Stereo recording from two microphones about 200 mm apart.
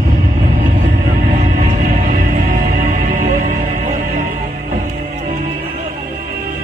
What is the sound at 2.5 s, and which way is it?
Music, 40° right (ahead or behind).